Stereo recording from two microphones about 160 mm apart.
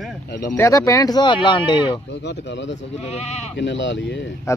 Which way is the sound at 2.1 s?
90° left.